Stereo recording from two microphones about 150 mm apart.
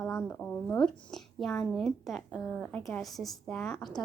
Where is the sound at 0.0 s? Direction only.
5° left (ahead or behind).